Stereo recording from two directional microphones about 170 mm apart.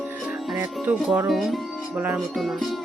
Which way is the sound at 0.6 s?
15° right (ahead or behind).